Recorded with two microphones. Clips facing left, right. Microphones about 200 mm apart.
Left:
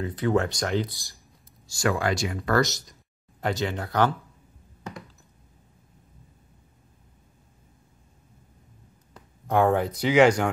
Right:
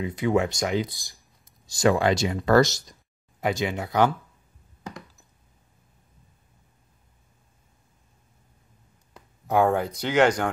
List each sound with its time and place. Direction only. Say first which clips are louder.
0.0 s speech: right 1 dB; 10° right (ahead or behind); by 2.8 s 30° right (ahead or behind)
3.3 s speech: right 2 dB; 10° right (ahead or behind)
9.1 s speech: right 1 dB; centre (ahead or behind)